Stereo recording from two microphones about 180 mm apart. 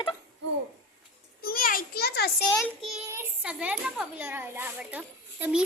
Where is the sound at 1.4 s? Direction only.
55° left (ahead or behind).